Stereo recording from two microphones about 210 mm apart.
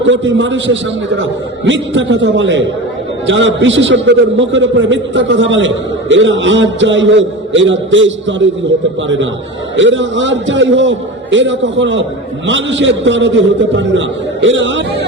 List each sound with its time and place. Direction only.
0.0 s a man's voice: 60° right (ahead or behind)